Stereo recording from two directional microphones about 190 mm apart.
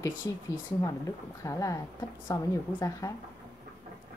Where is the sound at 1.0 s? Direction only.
15° left (ahead or behind).